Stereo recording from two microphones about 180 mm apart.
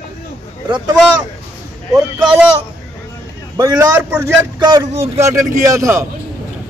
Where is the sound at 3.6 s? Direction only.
20° right (ahead or behind).